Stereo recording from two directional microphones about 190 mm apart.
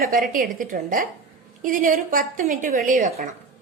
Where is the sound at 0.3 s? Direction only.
45° right (ahead or behind).